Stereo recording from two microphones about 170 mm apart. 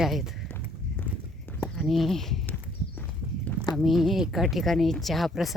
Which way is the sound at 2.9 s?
10° left (ahead or behind).